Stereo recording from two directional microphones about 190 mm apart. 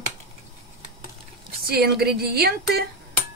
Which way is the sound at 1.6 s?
55° right (ahead or behind).